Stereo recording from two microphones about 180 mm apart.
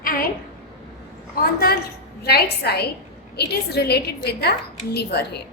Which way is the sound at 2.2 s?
60° left (ahead or behind).